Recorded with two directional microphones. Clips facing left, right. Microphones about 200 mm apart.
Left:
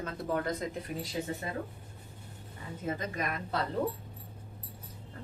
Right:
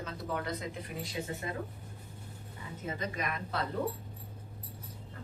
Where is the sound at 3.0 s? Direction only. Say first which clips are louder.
Left 1 dB; 45° left (ahead or behind).